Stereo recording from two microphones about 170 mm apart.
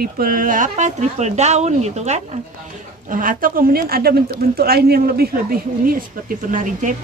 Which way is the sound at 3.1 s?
55° right (ahead or behind).